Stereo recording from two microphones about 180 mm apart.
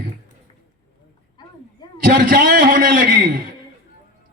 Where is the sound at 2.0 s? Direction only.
50° right (ahead or behind).